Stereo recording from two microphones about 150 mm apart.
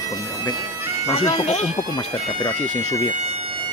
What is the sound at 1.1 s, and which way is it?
Speech, 40° left (ahead or behind).